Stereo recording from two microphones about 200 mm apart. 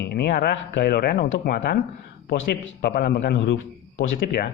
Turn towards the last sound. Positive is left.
turn(degrees=55)  # may be behind; listen again after turning